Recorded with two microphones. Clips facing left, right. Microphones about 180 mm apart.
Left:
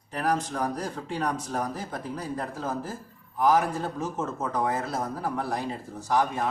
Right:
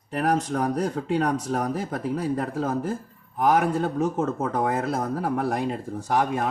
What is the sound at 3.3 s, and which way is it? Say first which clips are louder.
Speech: right 2 dB; 60° right (ahead or behind).